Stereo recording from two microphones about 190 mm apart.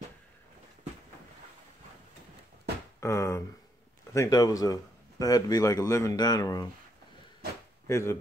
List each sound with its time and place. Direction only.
3.0 s speech: 15° left (ahead or behind)
7.8 s speech: 15° left (ahead or behind)